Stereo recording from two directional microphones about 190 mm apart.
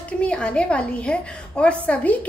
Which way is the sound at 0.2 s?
5° left (ahead or behind).